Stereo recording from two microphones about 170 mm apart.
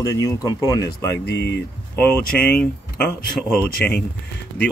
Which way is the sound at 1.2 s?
90° left.